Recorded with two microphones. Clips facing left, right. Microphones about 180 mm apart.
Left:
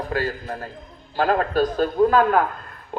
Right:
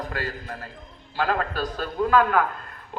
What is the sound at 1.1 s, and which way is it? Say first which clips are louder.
A man's voice: left 6 dB; 40° left (ahead or behind).